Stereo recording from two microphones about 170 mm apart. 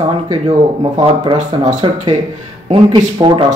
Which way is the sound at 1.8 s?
40° right (ahead or behind).